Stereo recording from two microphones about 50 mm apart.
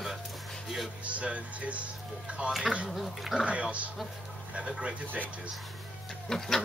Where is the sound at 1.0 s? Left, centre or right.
Right.